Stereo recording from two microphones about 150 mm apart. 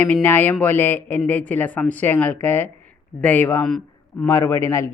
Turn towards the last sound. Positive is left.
turn(degrees=15)  # may be behind; listen again after turning